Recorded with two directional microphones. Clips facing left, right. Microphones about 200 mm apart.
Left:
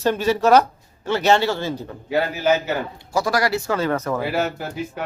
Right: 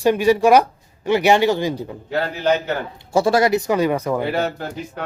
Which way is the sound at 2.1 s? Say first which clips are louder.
Even; 5° left (ahead or behind).